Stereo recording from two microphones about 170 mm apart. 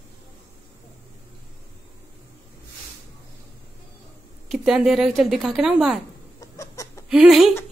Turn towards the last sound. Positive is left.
turn(degrees=0)  # may be behind; listen again after turning